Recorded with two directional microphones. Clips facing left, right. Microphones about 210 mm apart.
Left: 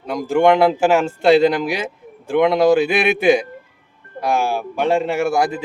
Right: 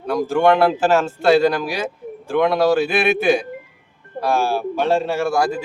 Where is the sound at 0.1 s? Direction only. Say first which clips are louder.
Left 1 dB; 15° left (ahead or behind).